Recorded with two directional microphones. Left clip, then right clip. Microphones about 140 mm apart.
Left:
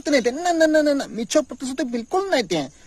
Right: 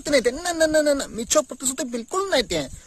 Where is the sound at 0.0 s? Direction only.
25° right (ahead or behind).